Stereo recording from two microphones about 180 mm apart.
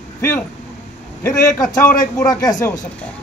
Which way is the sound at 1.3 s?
20° left (ahead or behind).